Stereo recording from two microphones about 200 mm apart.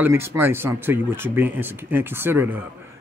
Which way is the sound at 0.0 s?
10° right (ahead or behind).